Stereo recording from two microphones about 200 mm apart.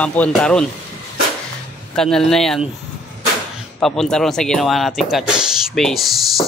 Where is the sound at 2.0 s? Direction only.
Centre (ahead or behind).